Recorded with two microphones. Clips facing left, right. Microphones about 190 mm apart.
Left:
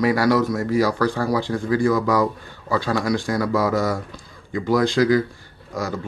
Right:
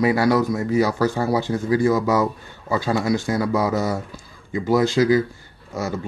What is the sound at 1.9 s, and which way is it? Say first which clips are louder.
Speech: even; 20° right (ahead or behind).